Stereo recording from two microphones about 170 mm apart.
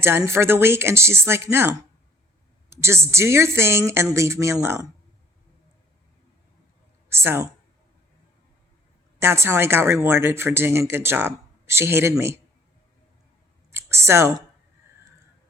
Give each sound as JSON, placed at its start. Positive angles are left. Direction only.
{"t": 0.0, "sound": "speech", "side_deg": -15}
{"t": 7.1, "sound": "a woman's voice", "side_deg": -15}
{"t": 9.1, "sound": "speech", "side_deg": -15}
{"t": 13.7, "sound": "a sound", "side_deg": -15}